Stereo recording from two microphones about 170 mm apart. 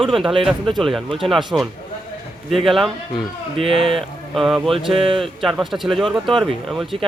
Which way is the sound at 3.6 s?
30° right (ahead or behind).